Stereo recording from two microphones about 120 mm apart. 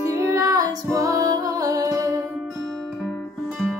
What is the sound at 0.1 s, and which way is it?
Female singing, 25° right (ahead or behind).